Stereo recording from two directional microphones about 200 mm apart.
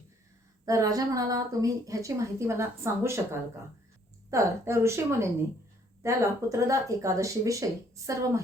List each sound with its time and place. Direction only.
0.6 s a woman's voice: 15° right (ahead or behind)
4.3 s a woman's voice: 15° right (ahead or behind)